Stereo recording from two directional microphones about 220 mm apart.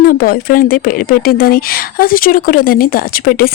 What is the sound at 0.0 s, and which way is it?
A woman's voice, 40° left (ahead or behind).